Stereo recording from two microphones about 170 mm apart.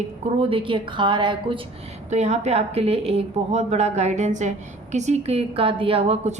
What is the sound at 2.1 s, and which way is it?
A woman's voice, 40° right (ahead or behind).